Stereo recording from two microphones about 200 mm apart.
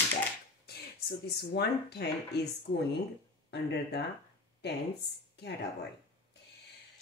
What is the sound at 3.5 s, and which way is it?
Speech, 55° left (ahead or behind).